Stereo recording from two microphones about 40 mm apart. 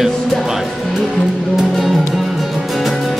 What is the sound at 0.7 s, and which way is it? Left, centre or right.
Speech, centre.